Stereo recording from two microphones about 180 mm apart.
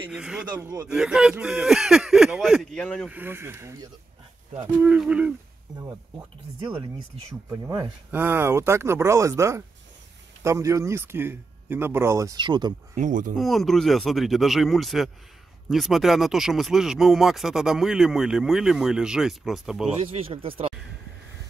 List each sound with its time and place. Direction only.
0.1 s speech: 5° right (ahead or behind)
0.6 s a man's voice: 15° right (ahead or behind)
0.8 s speech: 5° right (ahead or behind)
3.1 s a man's voice: 10° right (ahead or behind)
7.6 s a man's voice: 15° right (ahead or behind)
12.9 s speech: 45° right (ahead or behind)
13.4 s speech: centre (ahead or behind)